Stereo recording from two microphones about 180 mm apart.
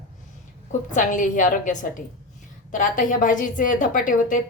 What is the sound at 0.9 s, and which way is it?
Speech, 45° left (ahead or behind).